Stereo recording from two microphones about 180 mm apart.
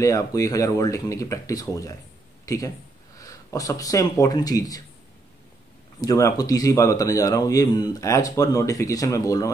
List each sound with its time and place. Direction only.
0.0 s speech: 20° left (ahead or behind)
5.9 s speech: 20° left (ahead or behind)